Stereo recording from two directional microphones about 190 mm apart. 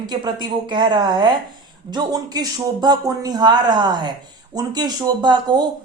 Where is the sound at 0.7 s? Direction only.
25° right (ahead or behind).